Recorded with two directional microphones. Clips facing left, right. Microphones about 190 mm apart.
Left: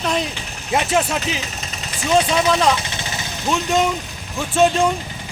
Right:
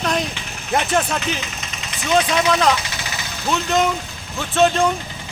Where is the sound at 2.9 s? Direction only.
25° left (ahead or behind).